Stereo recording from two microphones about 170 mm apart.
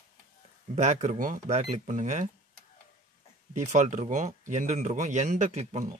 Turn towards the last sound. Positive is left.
turn(degrees=-40)  # may be behind; listen again after turning